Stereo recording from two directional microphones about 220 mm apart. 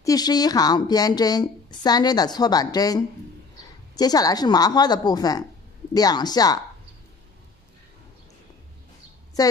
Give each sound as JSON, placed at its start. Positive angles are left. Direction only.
{"t": 0.0, "sound": "a woman's voice", "side_deg": 15}
{"t": 9.4, "sound": "a woman's voice", "side_deg": 15}